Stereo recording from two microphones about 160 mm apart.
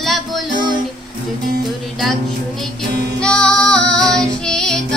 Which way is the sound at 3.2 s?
5° left (ahead or behind).